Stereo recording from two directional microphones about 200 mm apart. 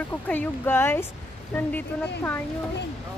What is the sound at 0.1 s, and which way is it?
Speech, 10° left (ahead or behind).